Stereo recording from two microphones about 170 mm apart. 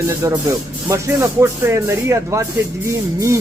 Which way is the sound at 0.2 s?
15° right (ahead or behind).